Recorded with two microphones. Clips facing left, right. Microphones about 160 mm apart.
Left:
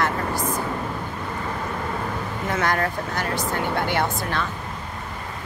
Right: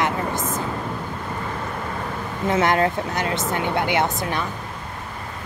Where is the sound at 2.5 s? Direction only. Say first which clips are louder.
Right 5 dB; 20° right (ahead or behind).